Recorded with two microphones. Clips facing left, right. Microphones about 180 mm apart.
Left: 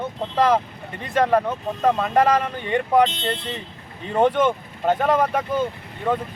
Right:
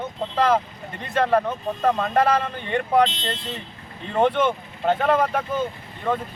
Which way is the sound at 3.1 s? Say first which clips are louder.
Left 4 dB; 50° left (ahead or behind).